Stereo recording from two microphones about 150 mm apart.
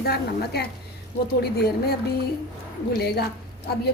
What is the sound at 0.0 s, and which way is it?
A woman's voice, 90° left.